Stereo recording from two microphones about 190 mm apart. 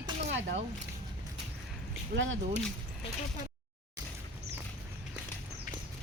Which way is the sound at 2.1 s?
80° right.